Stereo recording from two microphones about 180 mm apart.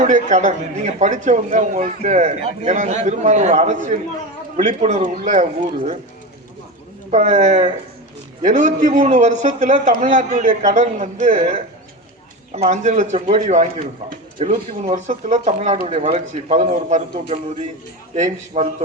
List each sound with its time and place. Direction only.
0.0 s a man's voice: 45° right (ahead or behind)
7.1 s a man's voice: 35° right (ahead or behind)